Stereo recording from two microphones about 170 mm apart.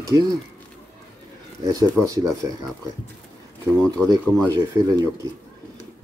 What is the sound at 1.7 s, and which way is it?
Speech, 20° right (ahead or behind).